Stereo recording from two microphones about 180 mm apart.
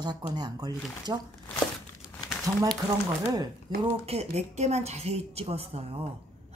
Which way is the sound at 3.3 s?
30° right (ahead or behind).